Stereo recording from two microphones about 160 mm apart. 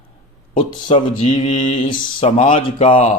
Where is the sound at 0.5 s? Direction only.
40° left (ahead or behind).